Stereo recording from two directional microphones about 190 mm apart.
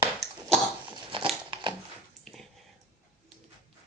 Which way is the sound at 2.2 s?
5° left (ahead or behind).